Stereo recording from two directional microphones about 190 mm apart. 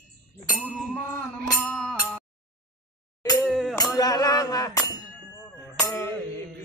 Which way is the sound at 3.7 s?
20° left (ahead or behind).